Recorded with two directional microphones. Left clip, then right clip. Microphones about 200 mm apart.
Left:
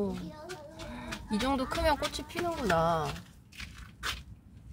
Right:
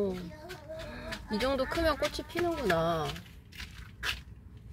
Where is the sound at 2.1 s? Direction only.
15° right (ahead or behind).